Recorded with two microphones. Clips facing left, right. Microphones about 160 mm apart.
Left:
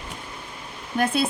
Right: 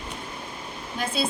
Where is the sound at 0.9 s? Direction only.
60° left (ahead or behind).